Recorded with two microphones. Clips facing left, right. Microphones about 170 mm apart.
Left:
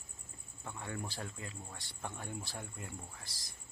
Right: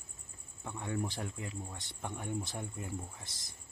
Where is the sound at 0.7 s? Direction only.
15° right (ahead or behind).